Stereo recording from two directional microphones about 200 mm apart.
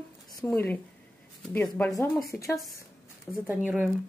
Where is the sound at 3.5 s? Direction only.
5° right (ahead or behind).